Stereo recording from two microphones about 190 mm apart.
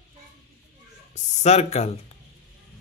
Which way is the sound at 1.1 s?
35° left (ahead or behind).